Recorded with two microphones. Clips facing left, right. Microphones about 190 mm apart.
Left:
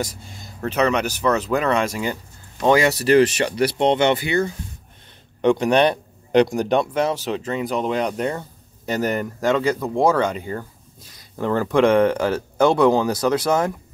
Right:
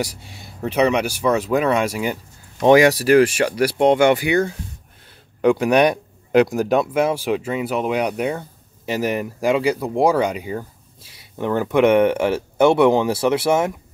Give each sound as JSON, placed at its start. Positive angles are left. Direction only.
{"t": 0.6, "sound": "speech", "side_deg": -10}
{"t": 11.7, "sound": "speech", "side_deg": -20}